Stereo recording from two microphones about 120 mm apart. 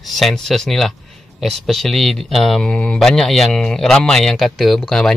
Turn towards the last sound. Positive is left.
turn(degrees=5)  # may be behind; listen again after turning